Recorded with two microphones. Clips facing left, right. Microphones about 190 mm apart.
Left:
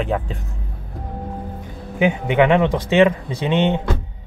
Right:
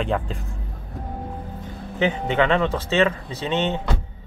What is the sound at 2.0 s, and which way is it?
Speech, 15° left (ahead or behind).